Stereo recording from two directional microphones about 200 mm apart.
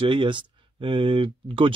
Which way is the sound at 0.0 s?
25° right (ahead or behind).